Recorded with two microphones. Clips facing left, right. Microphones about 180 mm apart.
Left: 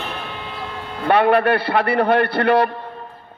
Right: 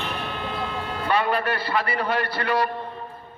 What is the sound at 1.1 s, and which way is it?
A man's voice, 60° left (ahead or behind).